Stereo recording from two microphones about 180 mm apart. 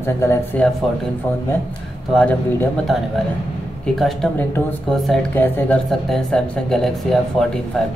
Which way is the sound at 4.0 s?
Centre (ahead or behind).